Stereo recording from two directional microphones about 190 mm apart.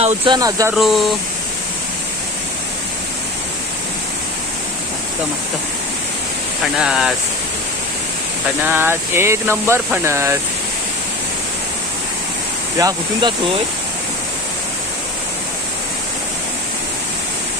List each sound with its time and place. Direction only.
0.0 s speech: 35° right (ahead or behind)
0.3 s speech: 20° right (ahead or behind)
0.8 s speech: centre (ahead or behind)
6.7 s speech: 5° right (ahead or behind)
8.6 s speech: 10° right (ahead or behind)
12.7 s speech: 20° right (ahead or behind)